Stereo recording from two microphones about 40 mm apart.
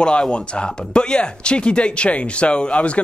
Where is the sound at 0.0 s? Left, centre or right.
Left.